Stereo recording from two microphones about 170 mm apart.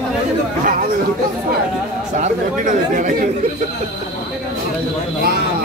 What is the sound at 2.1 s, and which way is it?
Speech, 45° right (ahead or behind).